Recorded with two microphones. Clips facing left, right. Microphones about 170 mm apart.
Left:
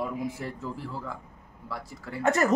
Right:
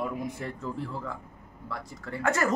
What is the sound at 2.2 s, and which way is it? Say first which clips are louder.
Speech: left 3 dB; 20° left (ahead or behind).